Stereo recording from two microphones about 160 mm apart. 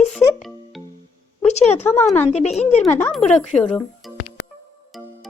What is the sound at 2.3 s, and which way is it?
Speech, 45° left (ahead or behind).